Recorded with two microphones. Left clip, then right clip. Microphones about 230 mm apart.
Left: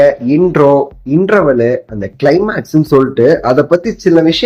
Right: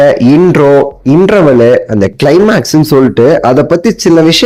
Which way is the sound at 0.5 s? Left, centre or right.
Right.